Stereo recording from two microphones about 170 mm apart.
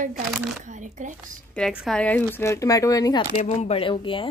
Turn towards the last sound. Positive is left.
turn(degrees=30)  # may be behind; listen again after turning